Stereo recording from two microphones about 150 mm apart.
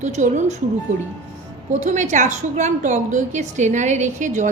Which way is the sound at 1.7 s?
55° right (ahead or behind).